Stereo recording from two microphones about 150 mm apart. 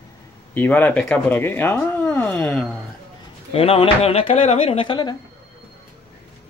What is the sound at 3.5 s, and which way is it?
Speech, 40° left (ahead or behind).